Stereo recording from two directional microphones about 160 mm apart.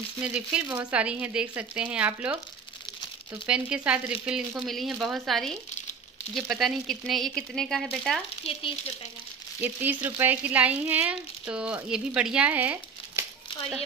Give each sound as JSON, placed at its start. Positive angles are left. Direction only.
{"t": 0.2, "sound": "speech", "side_deg": -5}
{"t": 3.4, "sound": "speech", "side_deg": -5}
{"t": 8.5, "sound": "speech", "side_deg": 40}
{"t": 9.6, "sound": "speech", "side_deg": -10}